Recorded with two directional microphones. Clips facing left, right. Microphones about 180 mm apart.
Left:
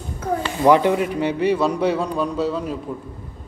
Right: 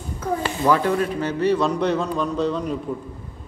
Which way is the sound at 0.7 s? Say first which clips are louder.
Left 4 dB; 15° left (ahead or behind).